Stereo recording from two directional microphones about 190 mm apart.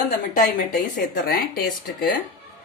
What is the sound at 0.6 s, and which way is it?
Speech, 50° left (ahead or behind).